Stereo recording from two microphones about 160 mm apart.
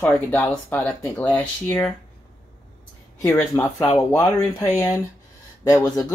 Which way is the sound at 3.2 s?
15° left (ahead or behind).